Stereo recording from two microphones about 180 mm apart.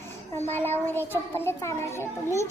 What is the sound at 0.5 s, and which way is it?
A child's voice, 10° left (ahead or behind).